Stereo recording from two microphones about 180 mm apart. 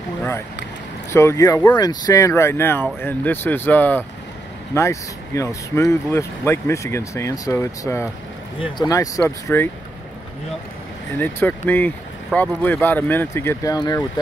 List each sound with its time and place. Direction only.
1.1 s speech: 15° left (ahead or behind)
11.1 s speech: 10° left (ahead or behind)